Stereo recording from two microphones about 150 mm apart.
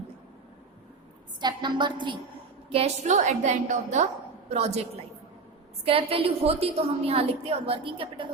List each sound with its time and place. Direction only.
1.4 s a woman's voice: 30° right (ahead or behind)
2.7 s a woman's voice: 50° right (ahead or behind)